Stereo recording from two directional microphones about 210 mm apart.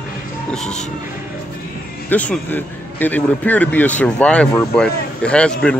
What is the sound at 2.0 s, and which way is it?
A man's voice, 5° left (ahead or behind).